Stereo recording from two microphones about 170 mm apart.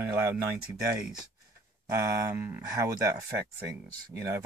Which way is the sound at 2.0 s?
15° right (ahead or behind).